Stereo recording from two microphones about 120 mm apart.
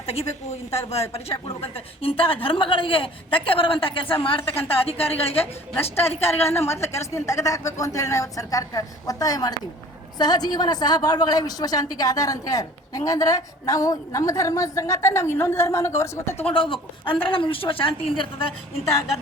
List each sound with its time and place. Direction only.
0.0 s a woman's voice: 55° left (ahead or behind)
6.0 s a woman's voice: 20° left (ahead or behind)
16.6 s a woman's voice: 45° left (ahead or behind)